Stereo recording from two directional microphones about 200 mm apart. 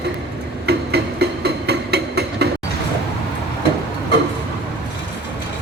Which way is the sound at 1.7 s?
55° right (ahead or behind).